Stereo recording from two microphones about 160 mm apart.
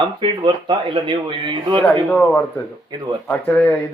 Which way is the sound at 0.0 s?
30° right (ahead or behind).